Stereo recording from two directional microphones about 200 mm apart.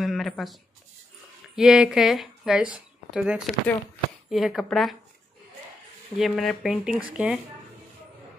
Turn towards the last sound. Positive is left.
turn(degrees=-5)  # may be behind; listen again after turning